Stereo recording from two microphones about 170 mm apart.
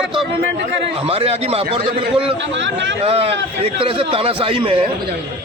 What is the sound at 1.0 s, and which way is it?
Speech, 35° right (ahead or behind).